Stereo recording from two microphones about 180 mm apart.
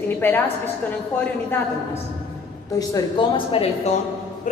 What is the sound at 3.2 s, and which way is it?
Speech, 25° left (ahead or behind).